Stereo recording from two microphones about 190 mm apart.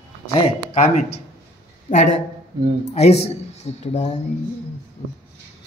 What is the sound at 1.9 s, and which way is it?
Speech, 40° left (ahead or behind).